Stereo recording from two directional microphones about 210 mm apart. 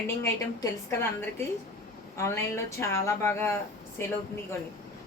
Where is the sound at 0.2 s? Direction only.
10° left (ahead or behind).